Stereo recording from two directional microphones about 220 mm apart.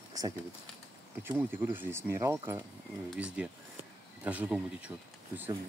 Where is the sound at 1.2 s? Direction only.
10° right (ahead or behind).